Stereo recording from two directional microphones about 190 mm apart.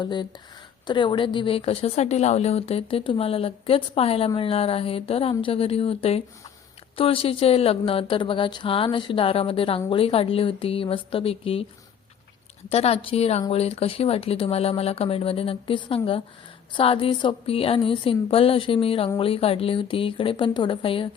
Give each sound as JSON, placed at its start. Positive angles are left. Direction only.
{"t": 0.0, "sound": "a woman's voice", "side_deg": 25}
{"t": 12.6, "sound": "a woman's voice", "side_deg": 30}